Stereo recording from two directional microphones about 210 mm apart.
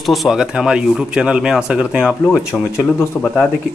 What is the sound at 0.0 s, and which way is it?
Speech, centre (ahead or behind).